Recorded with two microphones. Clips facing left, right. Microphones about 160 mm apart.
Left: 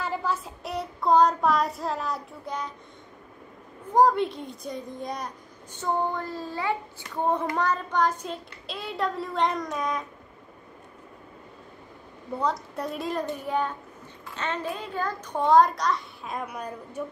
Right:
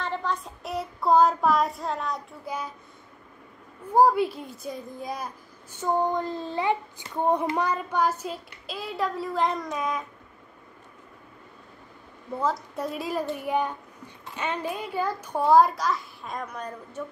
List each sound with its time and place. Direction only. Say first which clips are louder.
0.0 s child singing: left 1 dB; 5° left (ahead or behind)
3.8 s a child's voice: right 1 dB; 10° right (ahead or behind)
5.8 s child singing: right 3 dB; 10° right (ahead or behind)
7.5 s a child's voice: even; 10° right (ahead or behind)
12.4 s a child's voice: right 1 dB; centre (ahead or behind)
13.5 s a child's voice: right 1 dB; 15° right (ahead or behind); by 17.0 s 10° left (ahead or behind)